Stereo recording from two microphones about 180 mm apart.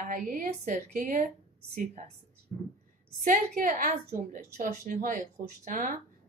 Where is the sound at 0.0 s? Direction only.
50° right (ahead or behind).